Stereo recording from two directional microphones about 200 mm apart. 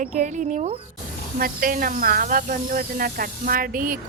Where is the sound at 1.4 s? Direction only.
45° right (ahead or behind).